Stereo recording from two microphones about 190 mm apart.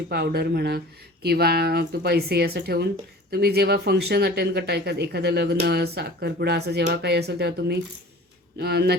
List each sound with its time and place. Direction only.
0.1 s speech: 55° right (ahead or behind)